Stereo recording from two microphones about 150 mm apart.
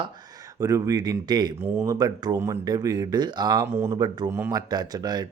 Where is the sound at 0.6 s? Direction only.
25° right (ahead or behind).